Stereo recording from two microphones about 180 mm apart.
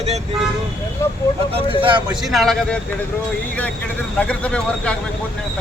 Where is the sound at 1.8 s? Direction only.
25° right (ahead or behind).